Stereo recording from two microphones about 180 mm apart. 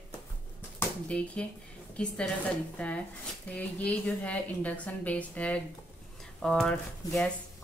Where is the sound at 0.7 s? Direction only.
5° left (ahead or behind).